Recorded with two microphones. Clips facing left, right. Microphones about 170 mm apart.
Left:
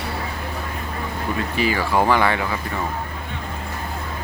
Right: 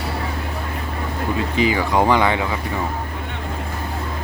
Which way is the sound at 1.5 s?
20° right (ahead or behind).